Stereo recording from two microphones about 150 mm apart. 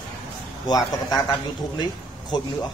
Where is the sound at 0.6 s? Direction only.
25° left (ahead or behind).